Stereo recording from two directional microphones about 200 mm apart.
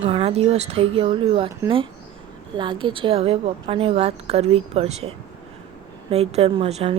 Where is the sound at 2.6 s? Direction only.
25° right (ahead or behind).